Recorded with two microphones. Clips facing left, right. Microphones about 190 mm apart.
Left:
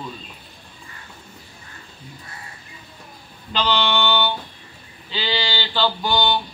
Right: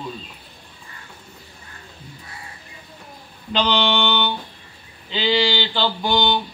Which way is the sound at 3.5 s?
15° right (ahead or behind).